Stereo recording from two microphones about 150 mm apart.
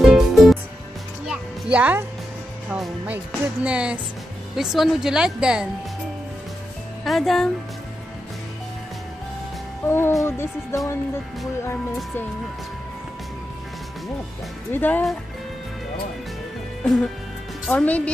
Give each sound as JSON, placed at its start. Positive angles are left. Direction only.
{"t": 0.0, "sound": "music", "side_deg": 0}
{"t": 2.7, "sound": "a woman's voice", "side_deg": -10}
{"t": 7.1, "sound": "a woman's voice", "side_deg": 0}
{"t": 9.8, "sound": "speech", "side_deg": 15}
{"t": 14.7, "sound": "speech", "side_deg": 10}
{"t": 16.8, "sound": "a woman's voice", "side_deg": 0}